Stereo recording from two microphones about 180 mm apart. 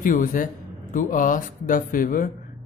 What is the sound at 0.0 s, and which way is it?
Speech, 50° left (ahead or behind).